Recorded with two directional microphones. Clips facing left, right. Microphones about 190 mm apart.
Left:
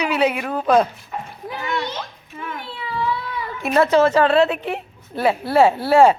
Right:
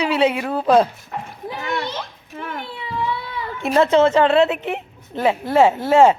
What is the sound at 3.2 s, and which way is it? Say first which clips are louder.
A woman's voice: right 1 dB; 30° right (ahead or behind).